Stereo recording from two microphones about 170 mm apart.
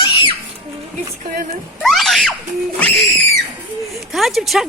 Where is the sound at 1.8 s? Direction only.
Centre (ahead or behind).